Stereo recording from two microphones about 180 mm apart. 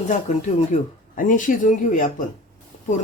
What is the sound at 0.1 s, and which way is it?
Speech, 40° left (ahead or behind).